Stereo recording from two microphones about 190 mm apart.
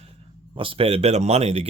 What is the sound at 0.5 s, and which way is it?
Speech, 30° right (ahead or behind).